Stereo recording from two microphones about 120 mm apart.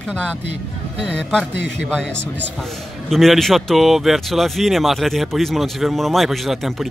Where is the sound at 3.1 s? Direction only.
Centre (ahead or behind).